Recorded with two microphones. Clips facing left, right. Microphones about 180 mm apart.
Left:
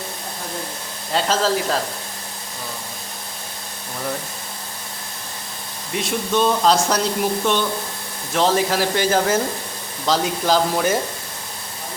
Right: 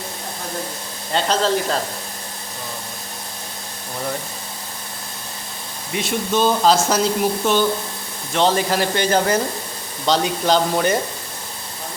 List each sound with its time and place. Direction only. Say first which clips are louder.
1.1 s speech: right 1 dB; 5° left (ahead or behind)
5.9 s speech: even; centre (ahead or behind)